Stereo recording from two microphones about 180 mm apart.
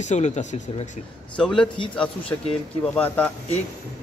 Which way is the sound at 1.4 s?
5° left (ahead or behind).